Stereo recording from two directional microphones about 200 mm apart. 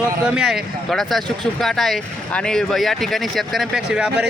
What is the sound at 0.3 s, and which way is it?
A man's voice, centre (ahead or behind).